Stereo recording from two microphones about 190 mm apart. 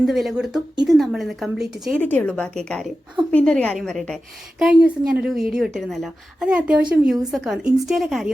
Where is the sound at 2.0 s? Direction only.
10° left (ahead or behind).